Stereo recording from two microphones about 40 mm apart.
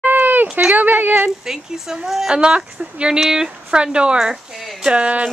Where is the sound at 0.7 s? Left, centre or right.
Right.